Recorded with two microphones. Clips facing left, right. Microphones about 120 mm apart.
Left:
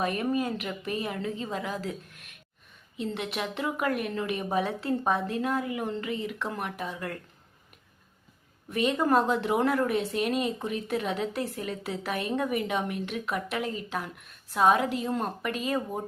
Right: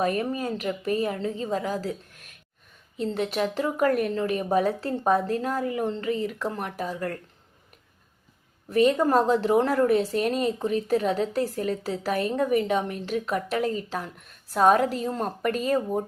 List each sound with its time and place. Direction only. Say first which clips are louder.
0.0 s speech: right 2 dB; 40° right (ahead or behind)
8.7 s speech: right 4 dB; 35° right (ahead or behind)